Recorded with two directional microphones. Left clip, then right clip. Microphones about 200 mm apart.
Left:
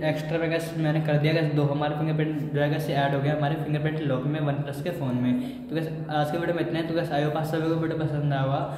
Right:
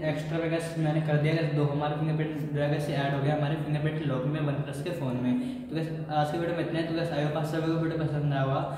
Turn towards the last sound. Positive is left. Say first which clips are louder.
# left 3 dB
turn(degrees=35)  # may be behind; listen again after turning